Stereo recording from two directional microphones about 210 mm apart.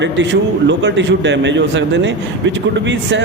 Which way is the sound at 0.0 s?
60° right (ahead or behind).